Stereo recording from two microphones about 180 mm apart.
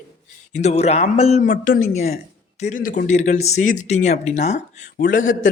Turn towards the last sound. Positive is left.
turn(degrees=45)  # may be behind; listen again after turning